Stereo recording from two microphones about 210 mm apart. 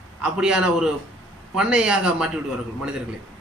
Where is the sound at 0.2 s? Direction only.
5° right (ahead or behind).